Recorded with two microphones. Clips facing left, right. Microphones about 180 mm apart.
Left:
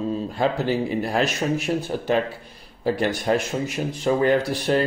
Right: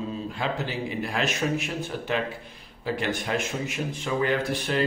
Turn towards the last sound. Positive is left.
turn(degrees=35)  # may be behind; listen again after turning